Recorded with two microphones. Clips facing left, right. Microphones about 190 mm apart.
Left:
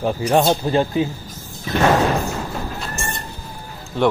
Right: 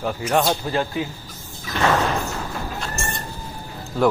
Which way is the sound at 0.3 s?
25° left (ahead or behind).